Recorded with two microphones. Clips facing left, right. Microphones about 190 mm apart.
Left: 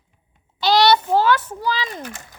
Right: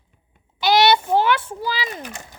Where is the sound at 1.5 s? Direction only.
10° right (ahead or behind).